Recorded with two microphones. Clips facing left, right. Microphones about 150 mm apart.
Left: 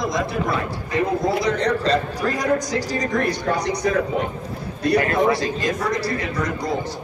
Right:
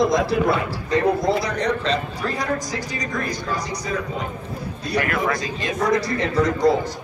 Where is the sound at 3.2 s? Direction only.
65° left (ahead or behind).